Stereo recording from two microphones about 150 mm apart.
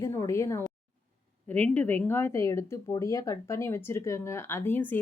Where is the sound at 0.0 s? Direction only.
20° left (ahead or behind).